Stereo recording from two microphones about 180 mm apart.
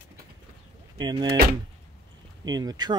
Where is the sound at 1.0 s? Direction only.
25° right (ahead or behind).